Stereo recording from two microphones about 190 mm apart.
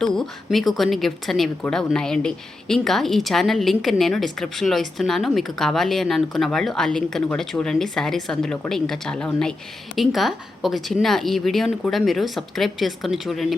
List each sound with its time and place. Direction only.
0.0 s speech: centre (ahead or behind)